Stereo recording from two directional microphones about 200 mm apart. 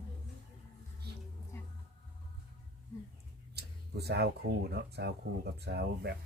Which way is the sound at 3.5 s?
55° right (ahead or behind).